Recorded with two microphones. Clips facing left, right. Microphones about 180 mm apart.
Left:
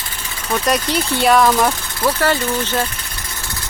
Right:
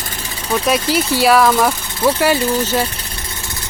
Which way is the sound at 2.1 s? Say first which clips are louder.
Right 3 dB; 10° right (ahead or behind).